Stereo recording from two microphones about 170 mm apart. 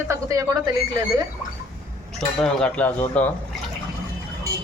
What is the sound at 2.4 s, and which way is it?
Speech, 5° left (ahead or behind).